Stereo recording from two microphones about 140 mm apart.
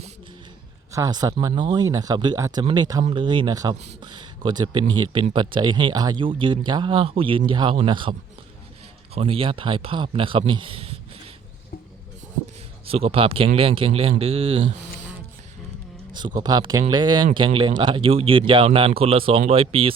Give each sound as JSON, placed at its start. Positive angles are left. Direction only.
{"t": 0.9, "sound": "speech", "side_deg": -25}
{"t": 3.0, "sound": "speech", "side_deg": -40}
{"t": 9.1, "sound": "speech", "side_deg": -45}
{"t": 12.8, "sound": "speech", "side_deg": -45}
{"t": 16.4, "sound": "speech", "side_deg": -30}